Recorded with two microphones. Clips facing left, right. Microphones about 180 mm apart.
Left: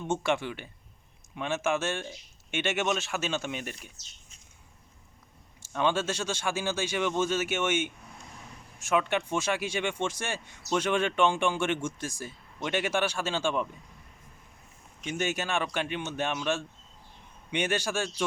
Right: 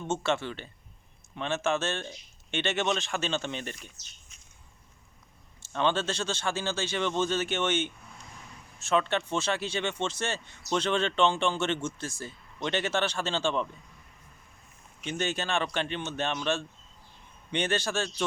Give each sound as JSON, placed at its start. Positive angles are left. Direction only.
{"t": 0.1, "sound": "speech", "side_deg": 15}
{"t": 5.6, "sound": "speech", "side_deg": 10}
{"t": 15.0, "sound": "speech", "side_deg": 10}